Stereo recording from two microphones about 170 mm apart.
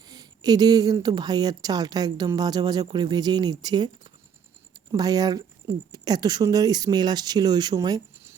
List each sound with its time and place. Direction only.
0.0 s speech: 20° right (ahead or behind)